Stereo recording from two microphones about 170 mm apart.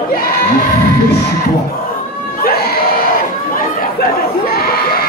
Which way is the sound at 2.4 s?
65° left (ahead or behind).